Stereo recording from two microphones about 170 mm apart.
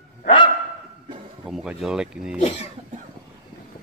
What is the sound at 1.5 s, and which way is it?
Speech, centre (ahead or behind).